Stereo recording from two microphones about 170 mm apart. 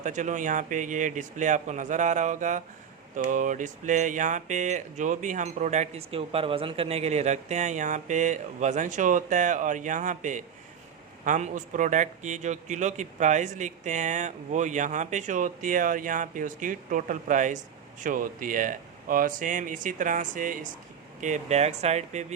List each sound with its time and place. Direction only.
0.0 s speech: 45° right (ahead or behind)